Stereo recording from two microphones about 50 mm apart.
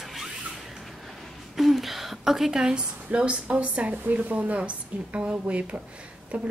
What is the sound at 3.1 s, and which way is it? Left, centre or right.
A woman's voice, right.